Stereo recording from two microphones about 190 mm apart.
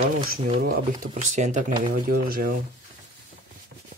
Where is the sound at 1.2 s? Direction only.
40° right (ahead or behind).